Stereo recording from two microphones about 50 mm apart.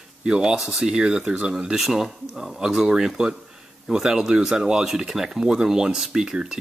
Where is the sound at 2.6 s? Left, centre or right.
Centre.